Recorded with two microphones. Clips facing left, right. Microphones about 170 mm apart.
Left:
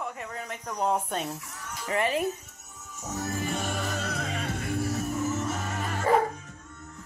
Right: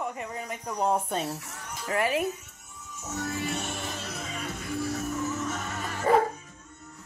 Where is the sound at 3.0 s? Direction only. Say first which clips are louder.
Even; 40° left (ahead or behind).